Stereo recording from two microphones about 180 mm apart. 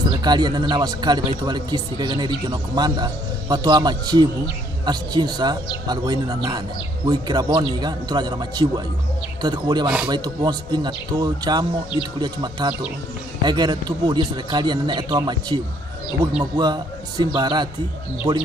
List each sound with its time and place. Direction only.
0.1 s speech: 25° right (ahead or behind)